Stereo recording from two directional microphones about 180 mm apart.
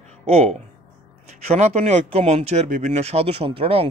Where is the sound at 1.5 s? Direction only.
35° right (ahead or behind).